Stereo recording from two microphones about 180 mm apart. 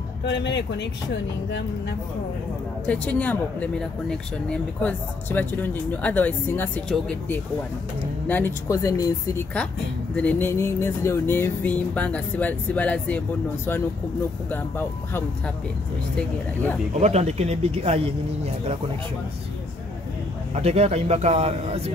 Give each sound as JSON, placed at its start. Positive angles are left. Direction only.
{"t": 0.2, "sound": "speech", "side_deg": 70}
{"t": 2.9, "sound": "speech", "side_deg": 10}
{"t": 10.1, "sound": "speech", "side_deg": 10}
{"t": 14.5, "sound": "speech", "side_deg": 10}
{"t": 17.0, "sound": "speech", "side_deg": -35}
{"t": 20.5, "sound": "speech", "side_deg": -35}